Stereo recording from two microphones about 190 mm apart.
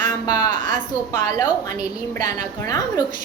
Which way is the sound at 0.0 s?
20° left (ahead or behind).